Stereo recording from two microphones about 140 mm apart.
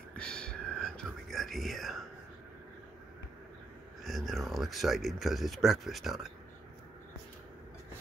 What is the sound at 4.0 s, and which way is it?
Speech, centre (ahead or behind).